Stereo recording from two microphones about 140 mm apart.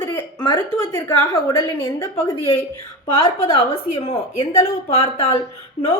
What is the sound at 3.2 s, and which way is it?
A woman's voice, 35° left (ahead or behind).